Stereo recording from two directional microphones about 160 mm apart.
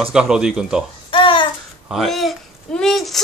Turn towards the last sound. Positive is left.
turn(degrees=0)  # may be behind; listen again after turning